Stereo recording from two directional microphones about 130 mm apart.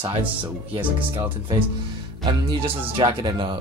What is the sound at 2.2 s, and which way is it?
Speech, 40° right (ahead or behind).